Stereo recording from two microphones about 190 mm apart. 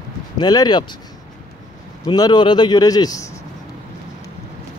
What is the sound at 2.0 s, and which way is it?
A man's voice, 20° left (ahead or behind).